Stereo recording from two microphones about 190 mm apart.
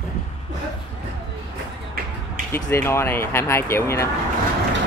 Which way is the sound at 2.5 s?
15° left (ahead or behind).